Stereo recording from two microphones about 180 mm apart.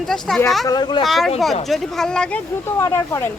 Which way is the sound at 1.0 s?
Centre (ahead or behind).